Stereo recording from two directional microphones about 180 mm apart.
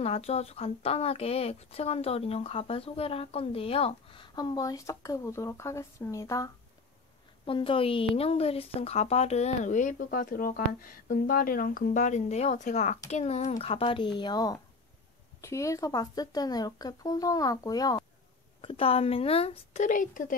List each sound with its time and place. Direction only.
0.0 s a woman's voice: 35° left (ahead or behind); by 6.5 s 20° left (ahead or behind)
7.4 s a woman's voice: 30° left (ahead or behind); by 20.3 s 45° left (ahead or behind)